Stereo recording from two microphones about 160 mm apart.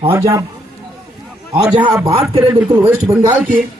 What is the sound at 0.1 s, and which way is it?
Speech, 20° right (ahead or behind).